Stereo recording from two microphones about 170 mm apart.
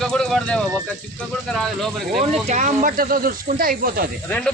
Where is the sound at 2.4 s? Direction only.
45° right (ahead or behind).